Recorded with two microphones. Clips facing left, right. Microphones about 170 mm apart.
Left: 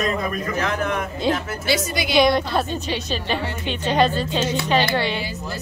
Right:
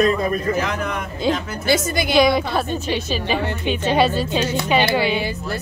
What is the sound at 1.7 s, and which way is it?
Speech, 50° right (ahead or behind).